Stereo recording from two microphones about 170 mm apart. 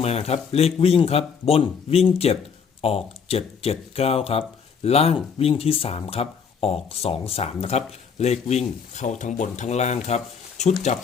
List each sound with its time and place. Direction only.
0.0 s speech: 35° left (ahead or behind)